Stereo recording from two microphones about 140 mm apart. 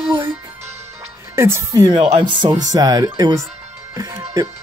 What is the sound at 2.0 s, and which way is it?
Speech, 35° right (ahead or behind).